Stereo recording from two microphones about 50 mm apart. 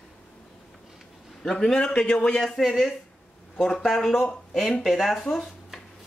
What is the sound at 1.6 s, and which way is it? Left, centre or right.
Speech, centre.